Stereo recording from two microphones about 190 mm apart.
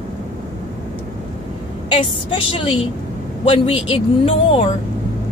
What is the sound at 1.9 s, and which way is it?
Speech, 30° left (ahead or behind).